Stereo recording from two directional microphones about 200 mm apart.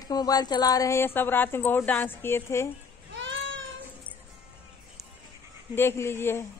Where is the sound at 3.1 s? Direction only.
70° right (ahead or behind).